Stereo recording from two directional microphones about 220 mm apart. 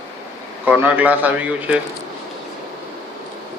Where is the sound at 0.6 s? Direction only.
5° right (ahead or behind).